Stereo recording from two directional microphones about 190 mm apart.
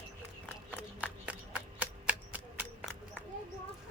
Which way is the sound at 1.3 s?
10° right (ahead or behind).